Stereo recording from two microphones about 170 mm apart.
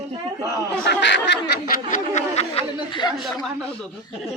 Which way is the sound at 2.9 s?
25° left (ahead or behind).